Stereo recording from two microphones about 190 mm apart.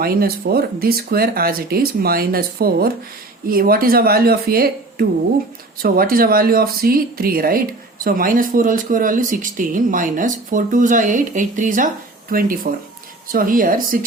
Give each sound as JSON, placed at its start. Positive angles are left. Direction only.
{"t": 0.0, "sound": "speech", "side_deg": -55}